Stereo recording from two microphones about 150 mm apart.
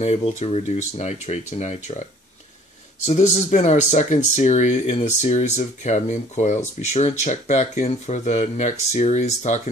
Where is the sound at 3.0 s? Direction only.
50° left (ahead or behind).